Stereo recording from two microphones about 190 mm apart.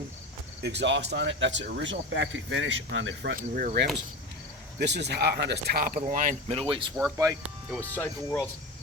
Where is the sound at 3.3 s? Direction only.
50° right (ahead or behind).